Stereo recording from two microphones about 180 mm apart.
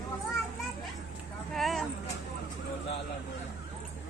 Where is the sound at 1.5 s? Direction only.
Centre (ahead or behind).